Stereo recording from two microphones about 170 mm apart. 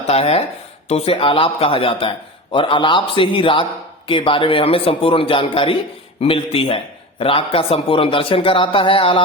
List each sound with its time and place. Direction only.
0.1 s a man's voice: 35° left (ahead or behind)